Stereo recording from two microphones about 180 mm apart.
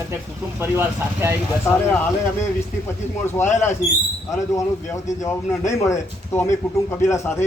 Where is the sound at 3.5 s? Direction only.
15° left (ahead or behind).